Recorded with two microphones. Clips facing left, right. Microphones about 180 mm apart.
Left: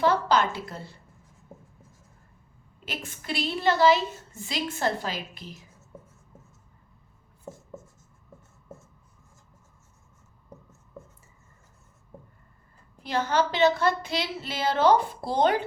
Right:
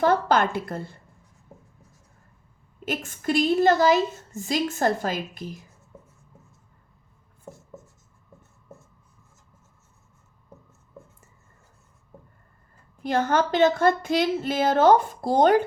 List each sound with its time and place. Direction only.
0.0 s a woman's voice: 50° right (ahead or behind)
2.8 s a woman's voice: 50° right (ahead or behind)
13.0 s a woman's voice: 50° right (ahead or behind)